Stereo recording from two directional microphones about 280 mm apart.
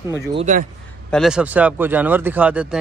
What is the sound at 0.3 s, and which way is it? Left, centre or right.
Speech, right.